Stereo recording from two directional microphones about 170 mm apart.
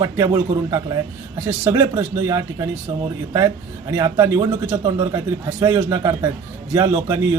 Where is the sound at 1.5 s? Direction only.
15° right (ahead or behind).